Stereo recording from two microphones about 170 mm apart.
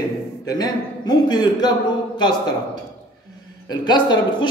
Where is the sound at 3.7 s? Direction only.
25° left (ahead or behind).